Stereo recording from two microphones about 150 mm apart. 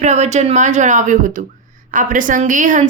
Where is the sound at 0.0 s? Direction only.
50° right (ahead or behind).